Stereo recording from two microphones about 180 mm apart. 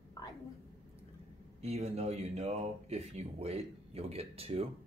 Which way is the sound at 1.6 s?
35° right (ahead or behind).